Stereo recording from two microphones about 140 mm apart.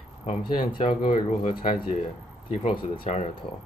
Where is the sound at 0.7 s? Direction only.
35° left (ahead or behind).